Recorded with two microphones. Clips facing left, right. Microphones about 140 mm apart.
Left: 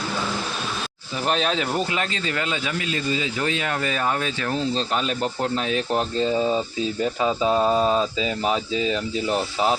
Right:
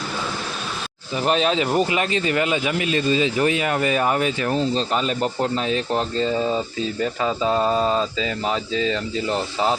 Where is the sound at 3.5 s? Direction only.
10° right (ahead or behind).